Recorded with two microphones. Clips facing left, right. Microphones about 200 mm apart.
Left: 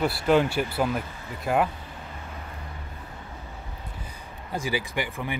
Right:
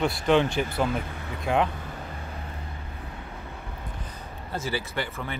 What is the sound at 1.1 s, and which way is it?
Vehicle, 60° right (ahead or behind).